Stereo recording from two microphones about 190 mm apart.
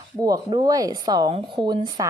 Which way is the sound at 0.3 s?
20° right (ahead or behind).